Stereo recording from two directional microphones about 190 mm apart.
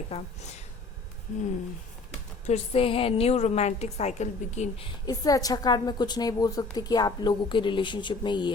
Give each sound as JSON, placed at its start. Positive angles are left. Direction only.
{"t": 0.1, "sound": "a woman's voice", "side_deg": 35}
{"t": 2.5, "sound": "a woman's voice", "side_deg": 30}
{"t": 5.0, "sound": "a woman's voice", "side_deg": 20}